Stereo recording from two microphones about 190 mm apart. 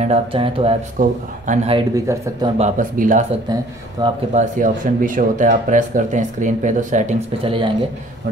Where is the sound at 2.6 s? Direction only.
45° right (ahead or behind).